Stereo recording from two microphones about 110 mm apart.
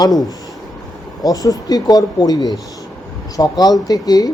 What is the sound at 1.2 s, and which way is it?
A man's voice, 35° left (ahead or behind).